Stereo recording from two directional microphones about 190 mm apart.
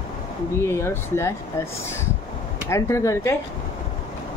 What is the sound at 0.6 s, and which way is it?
Speech, 15° left (ahead or behind).